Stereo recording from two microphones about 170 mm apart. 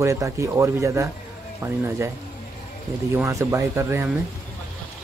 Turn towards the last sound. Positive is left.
turn(degrees=-15)  # may be behind; listen again after turning